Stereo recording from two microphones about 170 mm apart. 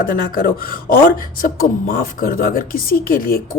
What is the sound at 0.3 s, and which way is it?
Speech, 60° left (ahead or behind).